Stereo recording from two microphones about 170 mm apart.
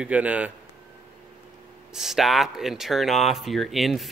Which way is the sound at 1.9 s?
Centre (ahead or behind).